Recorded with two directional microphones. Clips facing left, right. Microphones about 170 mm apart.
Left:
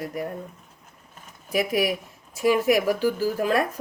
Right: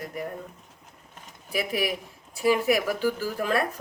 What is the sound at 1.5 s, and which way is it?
Speech, 40° left (ahead or behind).